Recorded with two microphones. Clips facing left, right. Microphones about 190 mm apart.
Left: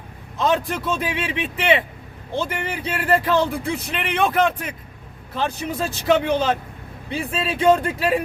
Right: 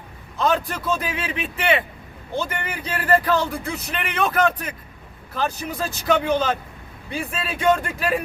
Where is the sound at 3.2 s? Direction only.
25° left (ahead or behind).